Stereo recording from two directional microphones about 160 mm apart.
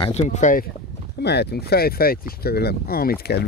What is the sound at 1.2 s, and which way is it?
Speech, 90° left.